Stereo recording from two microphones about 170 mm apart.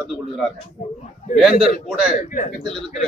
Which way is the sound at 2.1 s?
50° left (ahead or behind).